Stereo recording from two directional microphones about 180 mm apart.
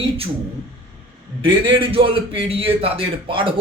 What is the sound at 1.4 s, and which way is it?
A man's voice, 25° right (ahead or behind).